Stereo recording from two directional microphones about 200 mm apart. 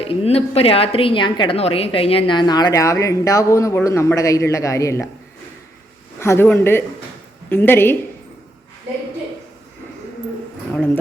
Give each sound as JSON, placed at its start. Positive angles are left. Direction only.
{"t": 0.0, "sound": "a woman's voice", "side_deg": 30}
{"t": 6.1, "sound": "speech", "side_deg": 10}